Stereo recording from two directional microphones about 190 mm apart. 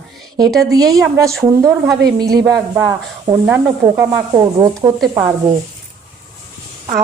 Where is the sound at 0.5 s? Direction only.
20° right (ahead or behind).